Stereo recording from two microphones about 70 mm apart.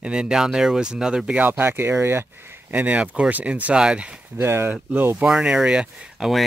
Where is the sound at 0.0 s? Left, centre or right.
Centre.